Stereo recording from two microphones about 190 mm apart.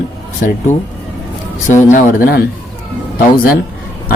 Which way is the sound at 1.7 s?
40° left (ahead or behind).